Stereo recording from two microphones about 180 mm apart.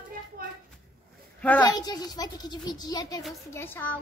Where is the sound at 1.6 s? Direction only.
20° left (ahead or behind).